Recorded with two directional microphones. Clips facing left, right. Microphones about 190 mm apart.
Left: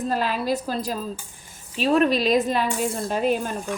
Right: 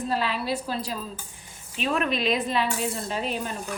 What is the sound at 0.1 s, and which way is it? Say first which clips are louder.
Speech: left 3 dB; 45° left (ahead or behind).